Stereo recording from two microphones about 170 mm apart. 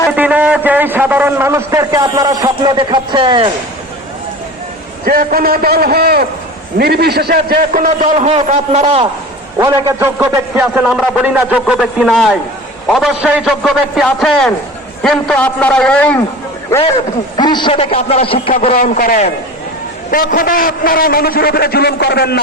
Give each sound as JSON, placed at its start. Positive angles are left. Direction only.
{"t": 0.2, "sound": "a sound", "side_deg": -10}
{"t": 5.0, "sound": "a man's voice", "side_deg": -60}
{"t": 9.6, "sound": "a man's voice", "side_deg": -20}
{"t": 17.3, "sound": "a man's voice", "side_deg": 25}
{"t": 18.8, "sound": "a man's voice", "side_deg": 55}